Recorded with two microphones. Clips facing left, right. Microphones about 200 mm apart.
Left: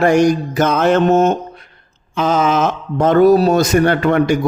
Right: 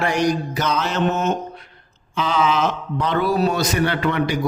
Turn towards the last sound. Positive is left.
turn(degrees=45)  # may be behind; listen again after turning